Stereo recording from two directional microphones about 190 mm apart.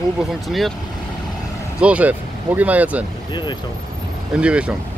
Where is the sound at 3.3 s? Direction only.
25° left (ahead or behind).